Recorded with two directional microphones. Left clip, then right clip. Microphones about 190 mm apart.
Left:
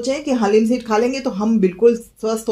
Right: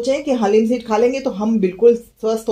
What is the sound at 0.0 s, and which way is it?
Speech, 30° left (ahead or behind).